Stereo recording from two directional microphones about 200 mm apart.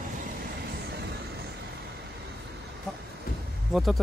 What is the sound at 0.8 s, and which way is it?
Vehicle, 55° right (ahead or behind).